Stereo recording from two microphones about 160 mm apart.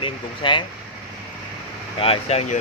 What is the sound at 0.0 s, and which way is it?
Speech, 30° left (ahead or behind).